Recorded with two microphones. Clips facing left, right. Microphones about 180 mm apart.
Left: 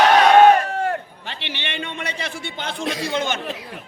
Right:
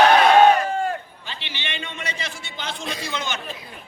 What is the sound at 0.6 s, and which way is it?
A man's voice, 70° left (ahead or behind).